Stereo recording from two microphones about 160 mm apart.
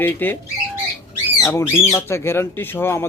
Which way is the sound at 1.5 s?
15° left (ahead or behind).